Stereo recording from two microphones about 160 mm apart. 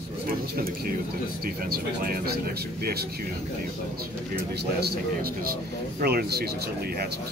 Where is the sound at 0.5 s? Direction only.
65° right (ahead or behind).